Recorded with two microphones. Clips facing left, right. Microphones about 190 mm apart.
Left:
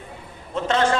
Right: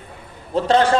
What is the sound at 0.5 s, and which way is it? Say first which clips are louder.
Speech: right 5 dB; 35° right (ahead or behind).